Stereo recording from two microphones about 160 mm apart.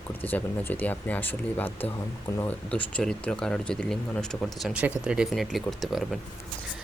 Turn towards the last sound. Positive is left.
turn(degrees=0)  # may be behind; listen again after turning